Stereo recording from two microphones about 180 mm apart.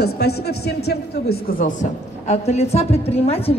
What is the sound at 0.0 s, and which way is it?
A man's voice, 65° left (ahead or behind).